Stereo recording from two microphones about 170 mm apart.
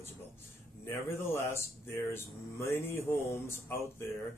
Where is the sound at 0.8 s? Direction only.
15° left (ahead or behind).